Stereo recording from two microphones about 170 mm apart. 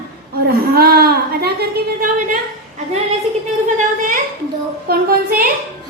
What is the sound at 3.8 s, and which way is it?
Speech, 50° right (ahead or behind).